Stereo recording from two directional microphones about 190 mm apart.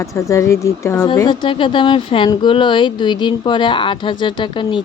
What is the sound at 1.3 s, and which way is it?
Speech, 25° left (ahead or behind).